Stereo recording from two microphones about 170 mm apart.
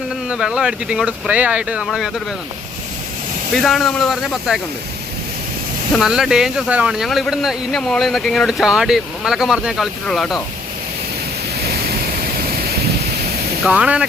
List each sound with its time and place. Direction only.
0.3 s speech: 5° right (ahead or behind)
3.5 s speech: centre (ahead or behind)
6.0 s speech: centre (ahead or behind)
11.6 s vehicle: 65° right (ahead or behind)
13.7 s speech: 5° right (ahead or behind)